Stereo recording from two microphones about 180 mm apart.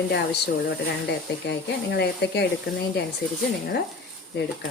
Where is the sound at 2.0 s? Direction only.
65° left (ahead or behind).